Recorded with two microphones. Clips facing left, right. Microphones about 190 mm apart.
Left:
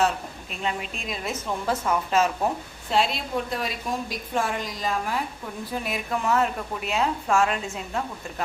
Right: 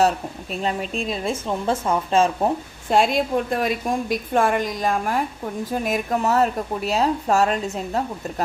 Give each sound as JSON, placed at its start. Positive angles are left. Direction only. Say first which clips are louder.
{"t": 0.5, "sound": "speech", "louder": "right 6 dB", "side_deg": -40}
{"t": 2.9, "sound": "a woman's voice", "louder": "right 6 dB", "side_deg": -50}